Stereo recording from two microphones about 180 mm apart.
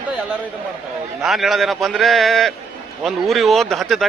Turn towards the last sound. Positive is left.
turn(degrees=0)  # may be behind; listen again after turning